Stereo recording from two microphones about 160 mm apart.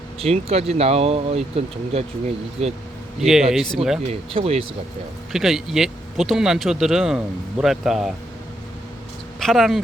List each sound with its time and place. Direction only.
0.2 s speech: 40° right (ahead or behind)
3.2 s speech: 5° right (ahead or behind)
4.1 s speech: 35° right (ahead or behind)
5.3 s speech: centre (ahead or behind)
9.4 s speech: centre (ahead or behind)